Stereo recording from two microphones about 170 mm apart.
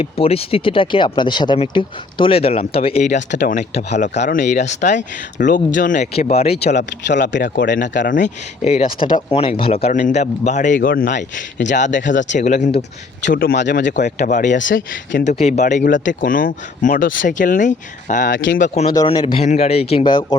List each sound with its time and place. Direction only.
0.0 s speech: 35° left (ahead or behind)
7.1 s speech: 90° left
8.1 s speech: 40° left (ahead or behind)
13.2 s speech: 55° left (ahead or behind); by 13.9 s 75° left (ahead or behind)
13.9 s speech: 45° left (ahead or behind)
18.3 s speech: 90° left
18.6 s speech: 40° left (ahead or behind)
18.9 s speech: 25° left (ahead or behind)